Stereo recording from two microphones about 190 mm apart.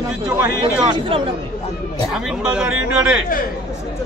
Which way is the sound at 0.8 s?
25° right (ahead or behind).